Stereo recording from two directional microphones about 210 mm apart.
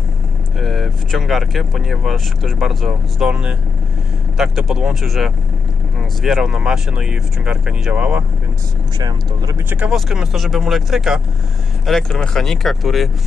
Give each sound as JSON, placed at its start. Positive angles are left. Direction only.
{"t": 0.6, "sound": "speech", "side_deg": 0}
{"t": 9.0, "sound": "speech", "side_deg": -15}
{"t": 9.8, "sound": "speech", "side_deg": 0}